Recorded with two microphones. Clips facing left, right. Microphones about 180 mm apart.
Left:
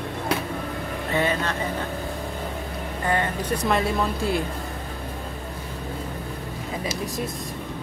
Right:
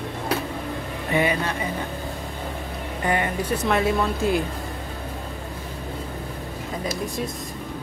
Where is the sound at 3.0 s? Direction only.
15° right (ahead or behind).